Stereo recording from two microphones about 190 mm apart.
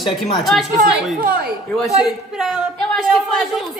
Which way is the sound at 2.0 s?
Centre (ahead or behind).